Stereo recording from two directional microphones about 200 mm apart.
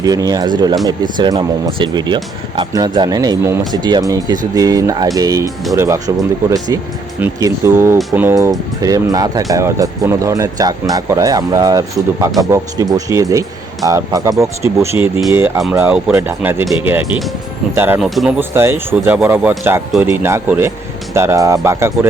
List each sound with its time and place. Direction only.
0.0 s speech: 20° right (ahead or behind)
7.2 s speech: 15° right (ahead or behind)
18.0 s speech: centre (ahead or behind)
18.3 s speech: 10° right (ahead or behind)